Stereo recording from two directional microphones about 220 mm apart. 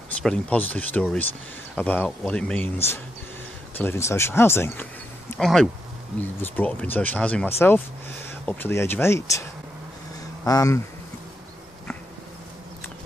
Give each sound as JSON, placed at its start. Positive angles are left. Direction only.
{"t": 0.2, "sound": "speech", "side_deg": 5}